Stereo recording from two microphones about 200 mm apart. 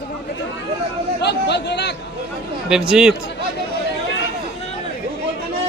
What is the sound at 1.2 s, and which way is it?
Chatter, 60° left (ahead or behind).